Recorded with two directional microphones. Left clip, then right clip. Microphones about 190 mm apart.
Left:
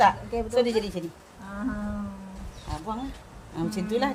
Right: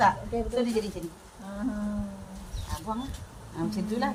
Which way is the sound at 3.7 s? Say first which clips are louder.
Left 4 dB; 30° left (ahead or behind).